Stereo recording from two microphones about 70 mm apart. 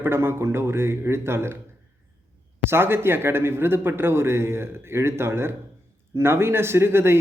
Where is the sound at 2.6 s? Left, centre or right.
Right.